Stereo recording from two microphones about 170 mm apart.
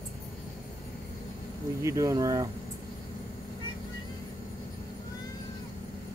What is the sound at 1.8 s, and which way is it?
Speech, 20° right (ahead or behind).